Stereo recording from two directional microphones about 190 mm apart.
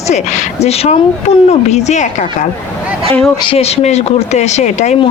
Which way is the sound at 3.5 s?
35° left (ahead or behind).